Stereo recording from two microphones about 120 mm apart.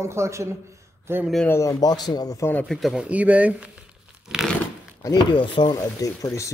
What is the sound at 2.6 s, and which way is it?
Speech, centre (ahead or behind).